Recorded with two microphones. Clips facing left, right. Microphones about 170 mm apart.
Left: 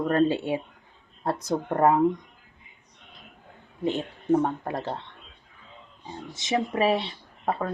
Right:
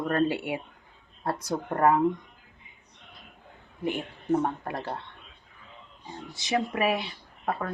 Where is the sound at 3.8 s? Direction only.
20° left (ahead or behind).